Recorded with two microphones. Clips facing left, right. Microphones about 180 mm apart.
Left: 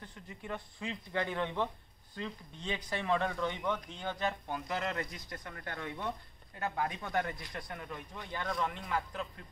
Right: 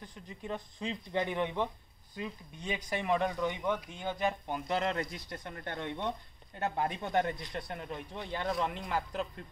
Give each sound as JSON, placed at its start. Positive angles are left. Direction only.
{"t": 0.0, "sound": "speech", "side_deg": -15}